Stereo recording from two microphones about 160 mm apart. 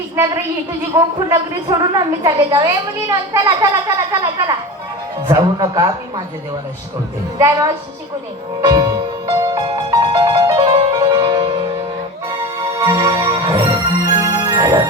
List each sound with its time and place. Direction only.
0.2 s a woman's voice: 15° right (ahead or behind)
7.3 s a woman's voice: 25° right (ahead or behind)
8.6 s music: 25° right (ahead or behind)